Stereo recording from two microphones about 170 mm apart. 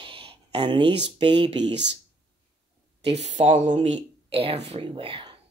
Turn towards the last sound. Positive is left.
turn(degrees=-30)  # may be behind; listen again after turning